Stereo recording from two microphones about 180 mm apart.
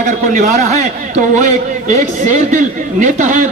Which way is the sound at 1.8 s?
45° right (ahead or behind).